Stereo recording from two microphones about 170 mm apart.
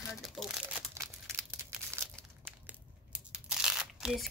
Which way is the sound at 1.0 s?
15° right (ahead or behind).